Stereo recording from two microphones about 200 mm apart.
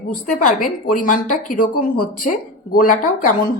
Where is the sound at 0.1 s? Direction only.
45° left (ahead or behind).